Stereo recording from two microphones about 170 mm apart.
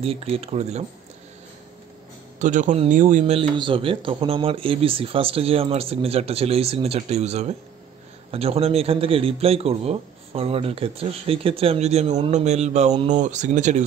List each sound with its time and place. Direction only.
0.0 s a man's voice: 35° right (ahead or behind)
2.3 s a man's voice: 50° right (ahead or behind)
3.3 s a man's voice: 30° right (ahead or behind); by 13.8 s 45° right (ahead or behind)